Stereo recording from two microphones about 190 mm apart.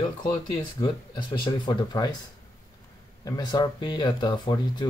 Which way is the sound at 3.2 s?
20° left (ahead or behind).